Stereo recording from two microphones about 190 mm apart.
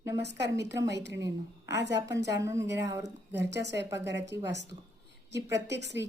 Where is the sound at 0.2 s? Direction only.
65° right (ahead or behind).